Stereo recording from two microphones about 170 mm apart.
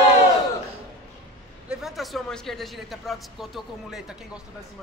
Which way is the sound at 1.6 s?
5° right (ahead or behind).